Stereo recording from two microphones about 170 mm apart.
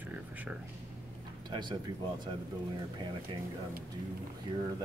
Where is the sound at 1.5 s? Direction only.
25° right (ahead or behind).